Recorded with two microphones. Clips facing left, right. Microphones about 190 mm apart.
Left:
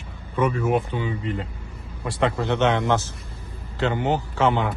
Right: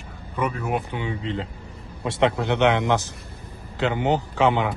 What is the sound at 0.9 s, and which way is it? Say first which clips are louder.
Speech: left 1 dB; 20° right (ahead or behind).